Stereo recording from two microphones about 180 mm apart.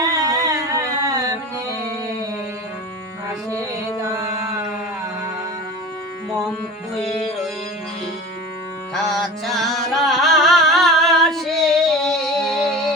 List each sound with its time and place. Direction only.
0.0 s music: 20° right (ahead or behind)
4.0 s a sound: 15° right (ahead or behind)
7.0 s music: centre (ahead or behind)
8.9 s music: centre (ahead or behind)